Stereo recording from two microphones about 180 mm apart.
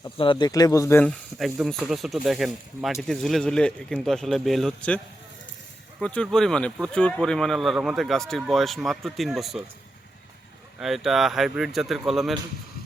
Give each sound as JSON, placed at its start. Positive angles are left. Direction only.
{"t": 0.2, "sound": "speech", "side_deg": 25}
{"t": 1.0, "sound": "speech", "side_deg": 0}
{"t": 6.0, "sound": "speech", "side_deg": 5}
{"t": 10.8, "sound": "speech", "side_deg": 0}